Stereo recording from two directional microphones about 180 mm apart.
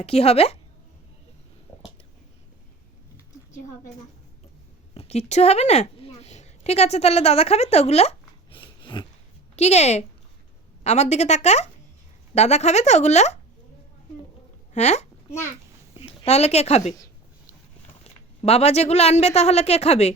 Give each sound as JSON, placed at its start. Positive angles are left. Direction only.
{"t": 0.0, "sound": "a woman's voice", "side_deg": 35}
{"t": 4.9, "sound": "a woman's voice", "side_deg": 35}
{"t": 8.4, "sound": "a sound", "side_deg": 30}
{"t": 9.6, "sound": "a woman's voice", "side_deg": 40}
{"t": 14.7, "sound": "speech", "side_deg": 40}
{"t": 18.4, "sound": "a woman's voice", "side_deg": 35}